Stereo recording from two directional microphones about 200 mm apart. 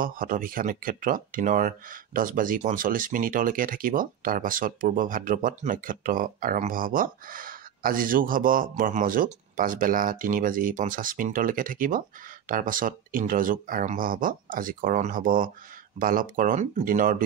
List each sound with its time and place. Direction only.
0.0 s speech: 45° right (ahead or behind)